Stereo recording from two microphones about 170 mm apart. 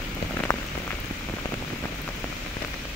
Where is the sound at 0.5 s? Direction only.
20° left (ahead or behind).